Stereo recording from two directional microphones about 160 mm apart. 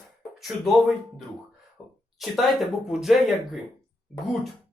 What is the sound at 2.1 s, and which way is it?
Speech, centre (ahead or behind).